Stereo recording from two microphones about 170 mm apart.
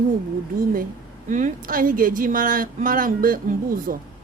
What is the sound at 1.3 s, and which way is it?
A woman's voice, 50° right (ahead or behind).